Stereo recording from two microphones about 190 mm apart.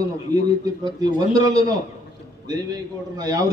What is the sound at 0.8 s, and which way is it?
A man's voice, 20° right (ahead or behind).